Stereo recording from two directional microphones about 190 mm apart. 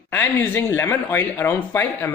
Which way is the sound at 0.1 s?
10° left (ahead or behind).